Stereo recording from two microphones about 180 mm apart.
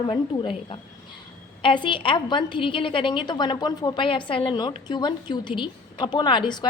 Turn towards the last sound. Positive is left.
turn(degrees=25)  # may be behind; listen again after turning